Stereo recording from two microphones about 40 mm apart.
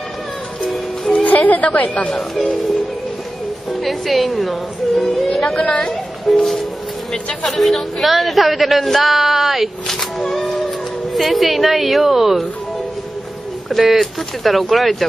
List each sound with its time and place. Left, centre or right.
1.1 s a woman's voice: left
3.8 s a woman's voice: centre
5.6 s a woman's voice: left
6.3 s a woman's voice: centre
7.4 s a woman's voice: centre
13.7 s a woman's voice: centre